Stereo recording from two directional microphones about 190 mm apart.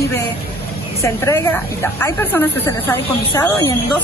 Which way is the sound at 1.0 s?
15° left (ahead or behind).